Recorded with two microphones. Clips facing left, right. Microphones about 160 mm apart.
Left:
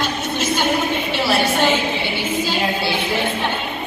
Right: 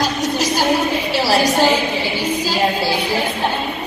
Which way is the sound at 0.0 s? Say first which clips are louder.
Right 3 dB; 40° right (ahead or behind).